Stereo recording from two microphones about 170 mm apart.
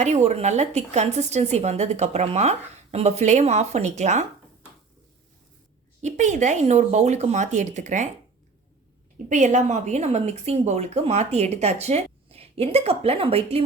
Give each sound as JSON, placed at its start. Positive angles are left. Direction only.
{"t": 0.0, "sound": "speech", "side_deg": -40}
{"t": 6.0, "sound": "speech", "side_deg": -45}
{"t": 9.1, "sound": "speech", "side_deg": -45}